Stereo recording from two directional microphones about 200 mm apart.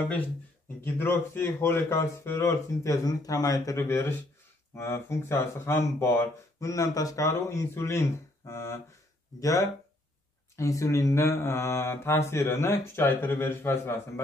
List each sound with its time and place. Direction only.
0.9 s speech: 10° left (ahead or behind)